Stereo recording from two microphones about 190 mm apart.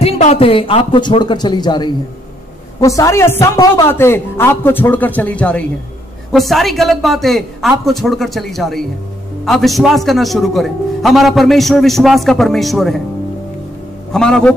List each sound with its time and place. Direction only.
0.0 s a man's voice: 30° left (ahead or behind); by 13.0 s centre (ahead or behind)
14.1 s a man's voice: 5° left (ahead or behind)